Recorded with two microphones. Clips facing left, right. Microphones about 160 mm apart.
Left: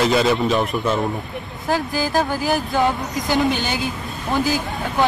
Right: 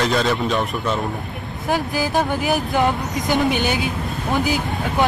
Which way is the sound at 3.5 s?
60° right (ahead or behind).